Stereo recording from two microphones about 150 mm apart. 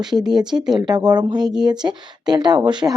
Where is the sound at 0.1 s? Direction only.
5° right (ahead or behind).